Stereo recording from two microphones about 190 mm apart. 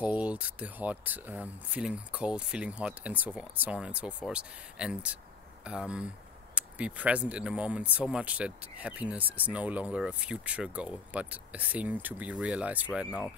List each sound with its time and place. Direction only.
0.0 s speech: 5° right (ahead or behind)